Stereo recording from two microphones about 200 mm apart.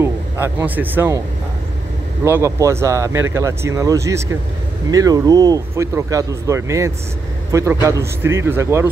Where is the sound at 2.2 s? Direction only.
15° right (ahead or behind).